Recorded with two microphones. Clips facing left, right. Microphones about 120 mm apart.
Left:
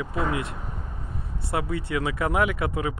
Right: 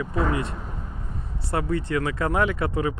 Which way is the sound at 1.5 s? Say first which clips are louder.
Right 2 dB; 5° left (ahead or behind).